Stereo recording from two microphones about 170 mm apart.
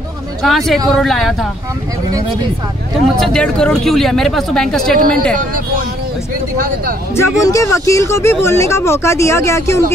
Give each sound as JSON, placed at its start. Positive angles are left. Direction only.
{"t": 0.4, "sound": "speech", "side_deg": 0}
{"t": 3.2, "sound": "speech", "side_deg": 5}
{"t": 4.9, "sound": "speech", "side_deg": -60}
{"t": 7.2, "sound": "speech", "side_deg": 20}